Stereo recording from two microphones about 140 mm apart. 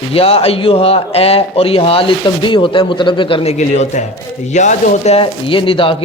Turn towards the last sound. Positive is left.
turn(degrees=40)  # may be behind; listen again after turning